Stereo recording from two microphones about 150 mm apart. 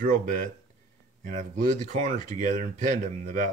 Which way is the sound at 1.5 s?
55° right (ahead or behind).